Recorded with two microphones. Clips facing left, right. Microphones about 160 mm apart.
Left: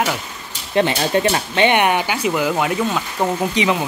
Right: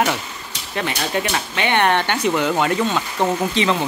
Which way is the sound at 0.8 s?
30° left (ahead or behind).